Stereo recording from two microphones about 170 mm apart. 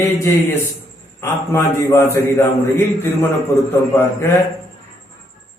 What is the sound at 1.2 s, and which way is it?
A man's voice, 15° left (ahead or behind).